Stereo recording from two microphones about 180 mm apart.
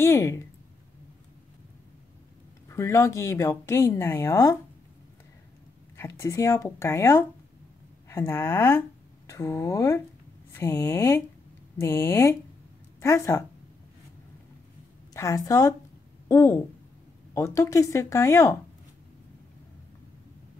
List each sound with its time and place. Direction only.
0.0 s speech: 15° left (ahead or behind)
2.7 s speech: 15° left (ahead or behind)
5.9 s speech: 15° left (ahead or behind)
15.1 s speech: 15° left (ahead or behind)